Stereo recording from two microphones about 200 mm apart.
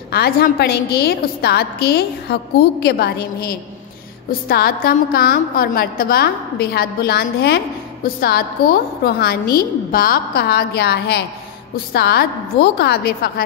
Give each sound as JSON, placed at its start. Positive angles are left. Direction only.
{"t": 0.1, "sound": "a woman's voice", "side_deg": 50}